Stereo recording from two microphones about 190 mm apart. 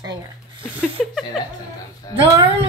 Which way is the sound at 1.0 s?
Centre (ahead or behind).